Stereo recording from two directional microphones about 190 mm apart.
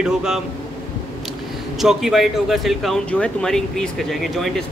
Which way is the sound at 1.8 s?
Centre (ahead or behind).